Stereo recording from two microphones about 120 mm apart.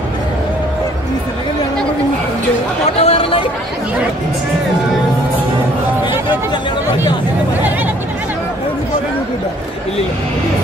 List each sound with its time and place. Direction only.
3.0 s chatter: 50° left (ahead or behind)